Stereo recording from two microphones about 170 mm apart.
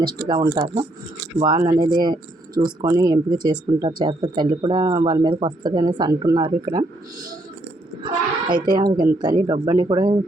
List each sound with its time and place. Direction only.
0.3 s speech: 20° right (ahead or behind)
0.5 s speech: 30° right (ahead or behind)
8.0 s child singing: 25° right (ahead or behind)
8.7 s speech: 25° right (ahead or behind)